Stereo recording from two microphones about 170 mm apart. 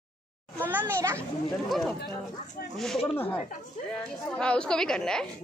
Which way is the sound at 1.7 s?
Centre (ahead or behind).